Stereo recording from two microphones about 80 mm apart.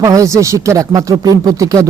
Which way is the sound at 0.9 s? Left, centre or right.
Right.